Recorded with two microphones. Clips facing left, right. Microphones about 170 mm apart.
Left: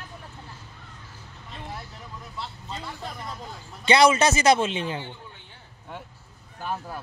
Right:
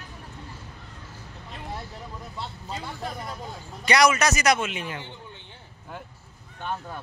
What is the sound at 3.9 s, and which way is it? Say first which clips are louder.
A man's voice: left 2 dB; 25° left (ahead or behind).